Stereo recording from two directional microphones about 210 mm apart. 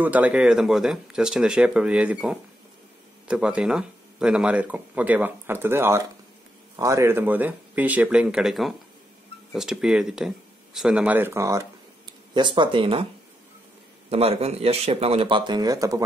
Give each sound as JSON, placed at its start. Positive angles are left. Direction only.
{"t": 0.0, "sound": "speech", "side_deg": -5}
{"t": 14.1, "sound": "speech", "side_deg": -30}